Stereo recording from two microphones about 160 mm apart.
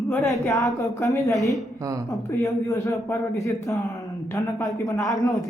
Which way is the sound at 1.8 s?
20° right (ahead or behind).